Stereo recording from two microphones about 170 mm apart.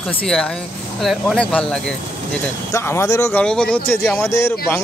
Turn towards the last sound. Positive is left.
turn(degrees=15)  # may be behind; listen again after turning